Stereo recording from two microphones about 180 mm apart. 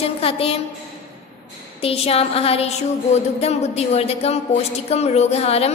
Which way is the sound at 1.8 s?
35° left (ahead or behind).